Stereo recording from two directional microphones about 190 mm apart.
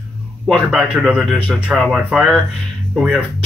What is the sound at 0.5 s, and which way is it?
Speech, centre (ahead or behind).